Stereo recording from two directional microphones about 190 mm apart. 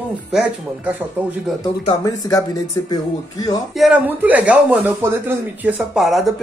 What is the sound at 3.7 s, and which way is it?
Speech, 5° right (ahead or behind).